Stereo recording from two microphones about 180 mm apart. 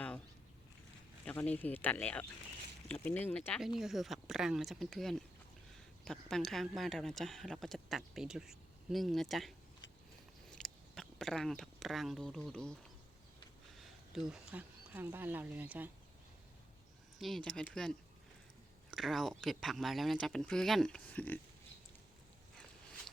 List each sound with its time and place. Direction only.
1.2 s speech: 10° left (ahead or behind)
10.5 s a sound: 5° left (ahead or behind)
13.7 s speech: centre (ahead or behind)
17.2 s speech: centre (ahead or behind)